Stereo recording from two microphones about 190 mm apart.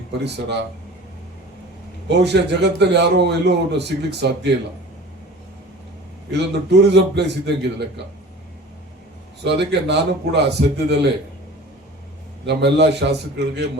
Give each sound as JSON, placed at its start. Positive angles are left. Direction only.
{"t": 0.1, "sound": "a man's voice", "side_deg": -65}
{"t": 2.0, "sound": "a man's voice", "side_deg": -65}
{"t": 6.3, "sound": "a man's voice", "side_deg": -65}
{"t": 9.4, "sound": "a man's voice", "side_deg": -65}
{"t": 12.5, "sound": "a man's voice", "side_deg": -65}